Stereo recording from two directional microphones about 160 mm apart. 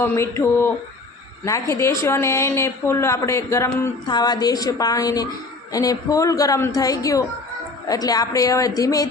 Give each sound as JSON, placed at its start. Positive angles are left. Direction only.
{"t": 0.0, "sound": "a woman's voice", "side_deg": 15}